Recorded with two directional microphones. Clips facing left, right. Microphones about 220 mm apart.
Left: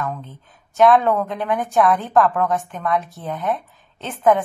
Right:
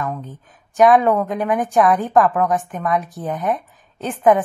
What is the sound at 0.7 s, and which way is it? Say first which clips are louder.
A woman's voice: right 2 dB; 15° right (ahead or behind).